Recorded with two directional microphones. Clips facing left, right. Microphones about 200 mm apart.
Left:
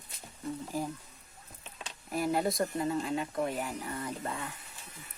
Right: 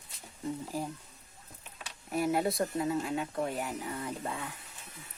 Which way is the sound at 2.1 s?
Centre (ahead or behind).